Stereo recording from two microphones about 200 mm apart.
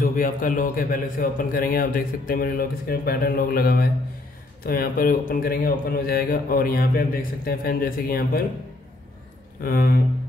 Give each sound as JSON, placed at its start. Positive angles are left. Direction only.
{"t": 0.0, "sound": "a man's voice", "side_deg": 45}
{"t": 9.6, "sound": "a man's voice", "side_deg": 45}